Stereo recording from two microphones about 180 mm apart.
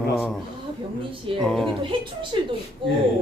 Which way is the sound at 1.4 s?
Centre (ahead or behind).